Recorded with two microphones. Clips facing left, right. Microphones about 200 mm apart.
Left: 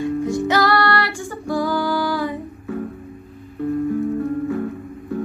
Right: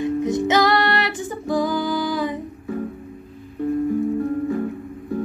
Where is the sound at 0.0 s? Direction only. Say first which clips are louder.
Even; 20° right (ahead or behind).